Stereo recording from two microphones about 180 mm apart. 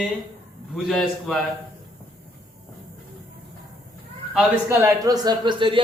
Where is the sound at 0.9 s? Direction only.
Centre (ahead or behind).